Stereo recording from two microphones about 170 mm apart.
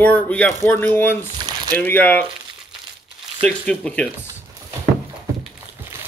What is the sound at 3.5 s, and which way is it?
Speech, 5° left (ahead or behind).